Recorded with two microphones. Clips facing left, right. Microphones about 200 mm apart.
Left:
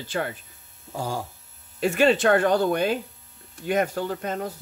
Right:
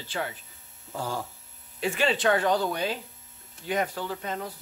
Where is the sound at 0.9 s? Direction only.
15° left (ahead or behind).